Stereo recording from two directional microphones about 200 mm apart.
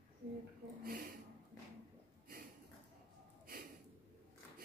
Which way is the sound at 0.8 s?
50° right (ahead or behind).